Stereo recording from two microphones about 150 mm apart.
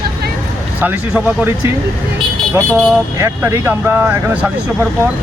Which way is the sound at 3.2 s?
20° right (ahead or behind).